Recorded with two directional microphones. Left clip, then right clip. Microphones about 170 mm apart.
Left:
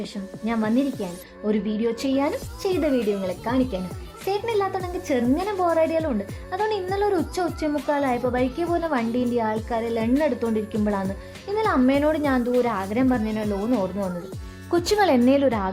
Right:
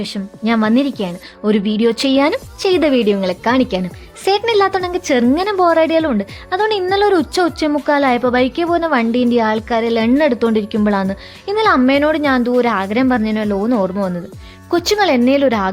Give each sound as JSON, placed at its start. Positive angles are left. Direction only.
{"t": 0.0, "sound": "a woman's voice", "side_deg": -35}
{"t": 14.7, "sound": "speech", "side_deg": -20}